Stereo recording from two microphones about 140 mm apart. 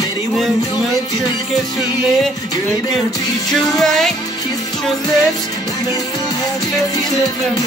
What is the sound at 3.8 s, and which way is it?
Music, 5° left (ahead or behind).